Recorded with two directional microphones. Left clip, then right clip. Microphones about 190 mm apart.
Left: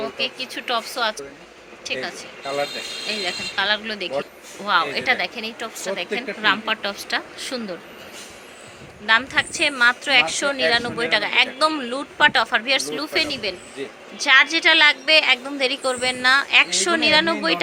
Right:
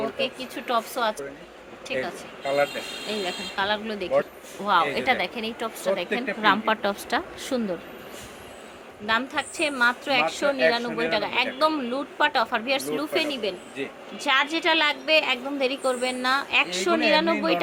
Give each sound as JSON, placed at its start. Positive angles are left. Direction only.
{"t": 0.0, "sound": "a woman's voice", "side_deg": -10}
{"t": 9.0, "sound": "a woman's voice", "side_deg": -5}